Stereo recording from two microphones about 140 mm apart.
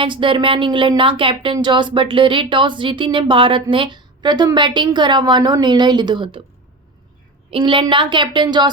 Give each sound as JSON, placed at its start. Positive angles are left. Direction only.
{"t": 0.0, "sound": "speech", "side_deg": -35}
{"t": 7.5, "sound": "speech", "side_deg": -40}